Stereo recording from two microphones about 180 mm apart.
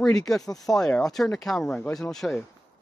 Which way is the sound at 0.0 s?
5° left (ahead or behind).